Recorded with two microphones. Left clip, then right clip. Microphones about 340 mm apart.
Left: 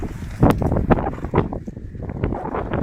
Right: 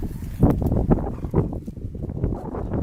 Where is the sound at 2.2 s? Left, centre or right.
Left.